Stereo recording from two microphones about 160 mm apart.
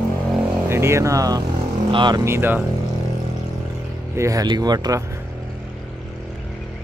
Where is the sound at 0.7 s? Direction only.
15° right (ahead or behind).